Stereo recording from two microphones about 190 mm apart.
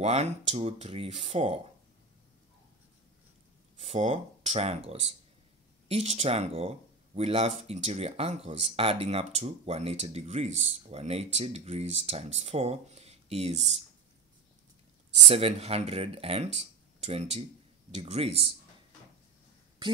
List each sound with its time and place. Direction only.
0.0 s speech: 35° right (ahead or behind)
3.8 s speech: 35° right (ahead or behind)
15.2 s speech: 30° right (ahead or behind)